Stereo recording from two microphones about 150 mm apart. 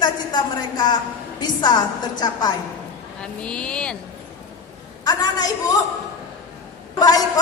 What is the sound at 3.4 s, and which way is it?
Speech, 5° left (ahead or behind).